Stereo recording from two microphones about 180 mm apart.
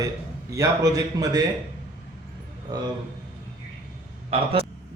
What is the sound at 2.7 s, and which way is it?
Speech, 20° right (ahead or behind).